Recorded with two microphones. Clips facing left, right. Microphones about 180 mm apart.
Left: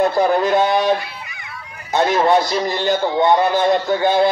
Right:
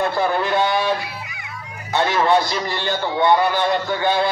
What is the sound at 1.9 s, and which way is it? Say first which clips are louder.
A man's voice: left 3 dB; 20° left (ahead or behind).